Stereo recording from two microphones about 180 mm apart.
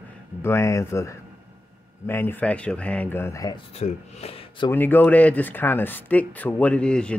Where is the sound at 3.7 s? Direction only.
35° left (ahead or behind).